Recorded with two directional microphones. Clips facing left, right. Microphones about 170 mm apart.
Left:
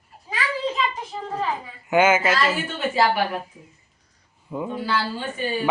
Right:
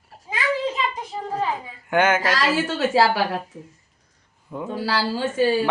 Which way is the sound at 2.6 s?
90° right.